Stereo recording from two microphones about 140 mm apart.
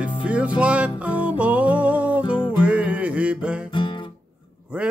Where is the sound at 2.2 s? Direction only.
40° left (ahead or behind).